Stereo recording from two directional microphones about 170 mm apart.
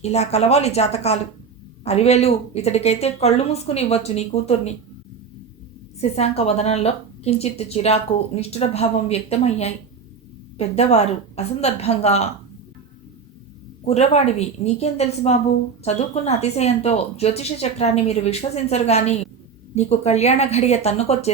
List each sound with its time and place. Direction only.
0.0 s a woman's voice: 40° left (ahead or behind)
6.0 s a woman's voice: 40° left (ahead or behind)
13.8 s a woman's voice: 40° left (ahead or behind)